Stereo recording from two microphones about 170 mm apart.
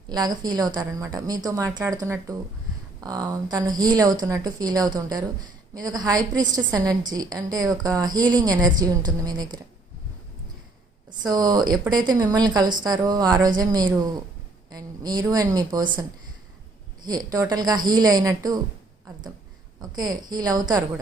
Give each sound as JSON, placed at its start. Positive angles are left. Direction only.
{"t": 0.1, "sound": "speech", "side_deg": -25}
{"t": 11.2, "sound": "speech", "side_deg": -25}
{"t": 17.1, "sound": "speech", "side_deg": -25}
{"t": 19.8, "sound": "speech", "side_deg": -25}